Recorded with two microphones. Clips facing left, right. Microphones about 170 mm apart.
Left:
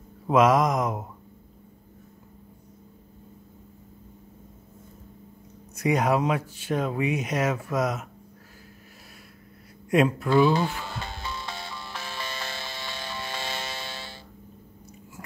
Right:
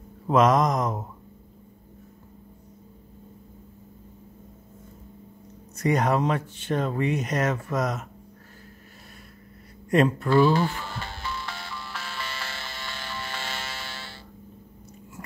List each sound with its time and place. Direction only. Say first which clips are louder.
0.3 s speech: even; 5° left (ahead or behind)
5.8 s speech: even; 5° left (ahead or behind)
9.8 s speech: right 1 dB; 5° left (ahead or behind)
10.3 s speech: right 1 dB; 15° left (ahead or behind)
10.7 s music: even; 15° left (ahead or behind)